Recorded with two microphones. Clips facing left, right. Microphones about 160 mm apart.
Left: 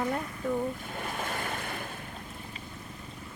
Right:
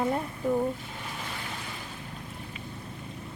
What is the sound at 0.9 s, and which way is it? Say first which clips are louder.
Waves: left 4 dB; 50° left (ahead or behind).